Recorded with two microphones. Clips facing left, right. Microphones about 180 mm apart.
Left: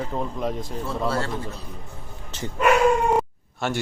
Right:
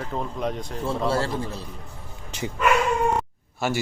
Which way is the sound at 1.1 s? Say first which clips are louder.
Right 2 dB; 30° right (ahead or behind).